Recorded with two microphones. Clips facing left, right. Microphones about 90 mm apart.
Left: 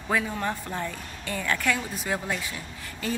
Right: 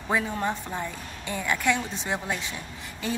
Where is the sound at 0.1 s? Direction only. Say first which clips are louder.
Right 1 dB; 15° right (ahead or behind).